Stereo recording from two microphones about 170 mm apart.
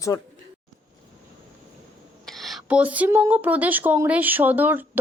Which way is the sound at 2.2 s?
Centre (ahead or behind).